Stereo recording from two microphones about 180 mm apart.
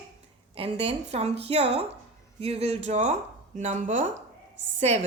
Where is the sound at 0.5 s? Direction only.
30° right (ahead or behind).